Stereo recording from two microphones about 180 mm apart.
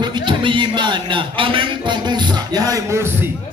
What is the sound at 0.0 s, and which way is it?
A man's voice, 25° right (ahead or behind).